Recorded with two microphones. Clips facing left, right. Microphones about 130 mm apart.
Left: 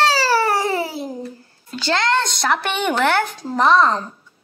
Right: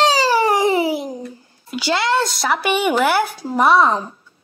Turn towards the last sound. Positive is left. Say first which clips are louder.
# right 1 dB
turn(degrees=-10)  # may be behind; listen again after turning